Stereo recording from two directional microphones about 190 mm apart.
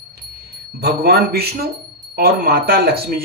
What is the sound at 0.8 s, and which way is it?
Speech, 55° right (ahead or behind).